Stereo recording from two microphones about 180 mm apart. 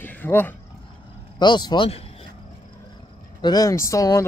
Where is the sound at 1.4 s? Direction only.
25° left (ahead or behind).